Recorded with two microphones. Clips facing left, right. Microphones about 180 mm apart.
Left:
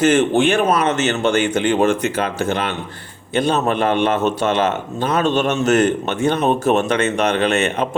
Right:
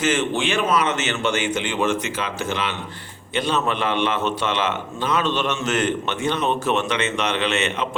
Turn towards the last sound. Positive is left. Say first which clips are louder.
# left 5 dB
turn(degrees=50)  # may be behind; listen again after turning